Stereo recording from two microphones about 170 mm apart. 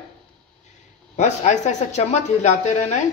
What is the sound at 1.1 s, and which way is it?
Speech, 45° left (ahead or behind).